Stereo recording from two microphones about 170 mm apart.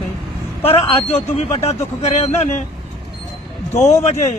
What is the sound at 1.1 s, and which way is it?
Speech, 40° left (ahead or behind).